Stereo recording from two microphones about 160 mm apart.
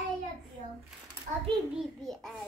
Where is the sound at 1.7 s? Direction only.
Centre (ahead or behind).